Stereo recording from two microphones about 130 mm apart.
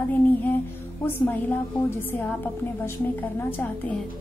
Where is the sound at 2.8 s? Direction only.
15° left (ahead or behind).